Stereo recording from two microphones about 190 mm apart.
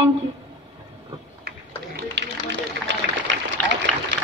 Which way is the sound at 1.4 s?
65° right (ahead or behind).